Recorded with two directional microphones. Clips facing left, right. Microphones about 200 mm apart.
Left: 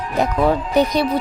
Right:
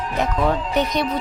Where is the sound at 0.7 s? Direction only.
35° left (ahead or behind).